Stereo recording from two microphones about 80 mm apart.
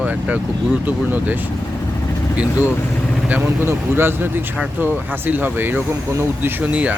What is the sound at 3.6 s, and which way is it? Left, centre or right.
Speech, right.